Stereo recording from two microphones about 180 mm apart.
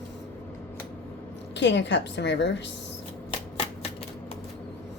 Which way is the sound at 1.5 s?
75° left (ahead or behind).